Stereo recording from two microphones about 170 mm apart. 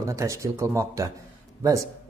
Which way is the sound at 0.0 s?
20° right (ahead or behind).